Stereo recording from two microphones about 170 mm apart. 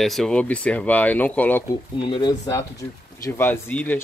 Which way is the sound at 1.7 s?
25° left (ahead or behind).